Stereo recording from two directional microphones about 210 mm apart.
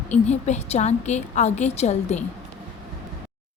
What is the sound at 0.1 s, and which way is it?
A woman's voice, 30° left (ahead or behind).